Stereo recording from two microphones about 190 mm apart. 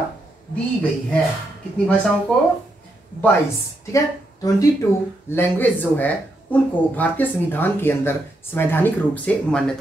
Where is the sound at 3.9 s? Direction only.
15° left (ahead or behind).